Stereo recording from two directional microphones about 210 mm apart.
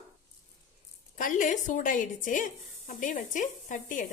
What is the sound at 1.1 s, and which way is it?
Speech, 40° left (ahead or behind).